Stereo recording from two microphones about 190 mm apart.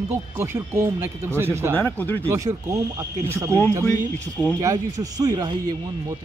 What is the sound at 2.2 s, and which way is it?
Speech, 15° right (ahead or behind).